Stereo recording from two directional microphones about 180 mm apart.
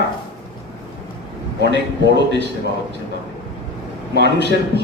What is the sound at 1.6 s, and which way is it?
Speech, 70° right (ahead or behind).